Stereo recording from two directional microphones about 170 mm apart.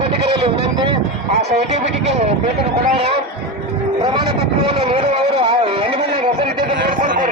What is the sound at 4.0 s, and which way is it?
Vehicle, 25° right (ahead or behind).